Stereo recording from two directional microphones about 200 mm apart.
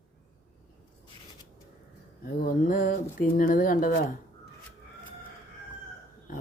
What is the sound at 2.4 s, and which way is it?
Speech, 45° left (ahead or behind).